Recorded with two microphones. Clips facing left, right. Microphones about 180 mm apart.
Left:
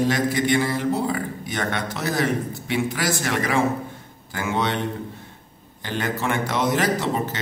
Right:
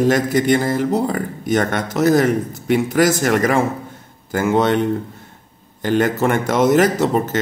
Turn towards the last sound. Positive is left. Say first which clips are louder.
# right 6 dB
turn(degrees=-45)  # may be behind; listen again after turning